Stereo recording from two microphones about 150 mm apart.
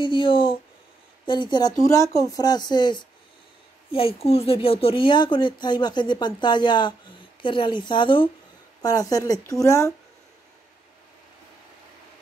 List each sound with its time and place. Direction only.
0.0 s speech: 35° left (ahead or behind)